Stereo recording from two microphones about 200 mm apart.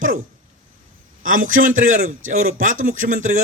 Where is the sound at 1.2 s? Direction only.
45° right (ahead or behind).